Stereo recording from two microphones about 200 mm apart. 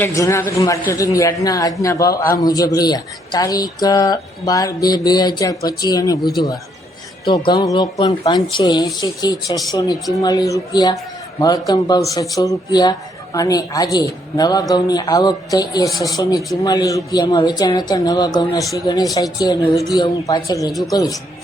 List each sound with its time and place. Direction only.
0.0 s a woman's voice: 15° left (ahead or behind)
7.3 s a woman's voice: 20° left (ahead or behind)